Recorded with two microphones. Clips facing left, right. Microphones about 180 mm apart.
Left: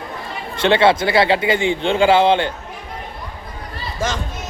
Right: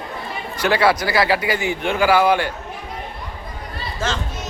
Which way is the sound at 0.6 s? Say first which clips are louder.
Left 3 dB; 25° left (ahead or behind).